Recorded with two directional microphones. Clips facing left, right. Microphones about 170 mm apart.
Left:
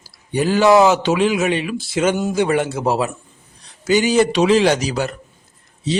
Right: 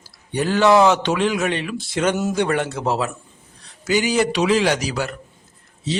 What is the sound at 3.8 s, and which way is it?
A man's voice, 25° left (ahead or behind).